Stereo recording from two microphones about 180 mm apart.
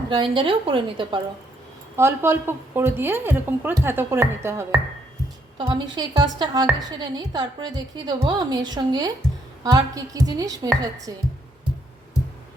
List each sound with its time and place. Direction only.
0.1 s a woman's voice: 30° right (ahead or behind)
2.0 s a woman's voice: 15° right (ahead or behind)
5.5 s a woman's voice: 25° right (ahead or behind)